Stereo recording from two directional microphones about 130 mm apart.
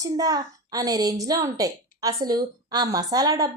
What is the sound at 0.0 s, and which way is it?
A woman's voice, 30° right (ahead or behind).